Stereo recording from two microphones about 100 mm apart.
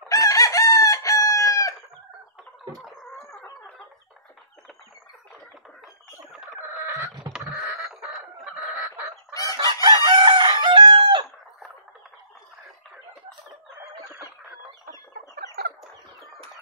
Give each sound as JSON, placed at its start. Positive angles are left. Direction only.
{"t": 0.1, "sound": "chicken", "side_deg": 35}
{"t": 6.9, "sound": "a sound", "side_deg": -25}
{"t": 7.9, "sound": "chicken", "side_deg": -5}
{"t": 8.7, "sound": "fowl", "side_deg": -20}
{"t": 9.3, "sound": "chicken", "side_deg": 35}
{"t": 9.6, "sound": "chicken", "side_deg": -50}